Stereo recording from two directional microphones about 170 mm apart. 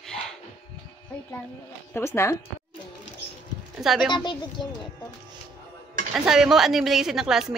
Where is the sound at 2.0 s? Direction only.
15° left (ahead or behind).